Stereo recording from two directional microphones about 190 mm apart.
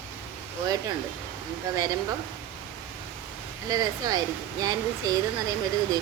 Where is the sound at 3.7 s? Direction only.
20° right (ahead or behind).